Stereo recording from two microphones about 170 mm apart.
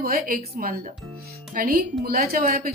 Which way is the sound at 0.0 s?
60° right (ahead or behind).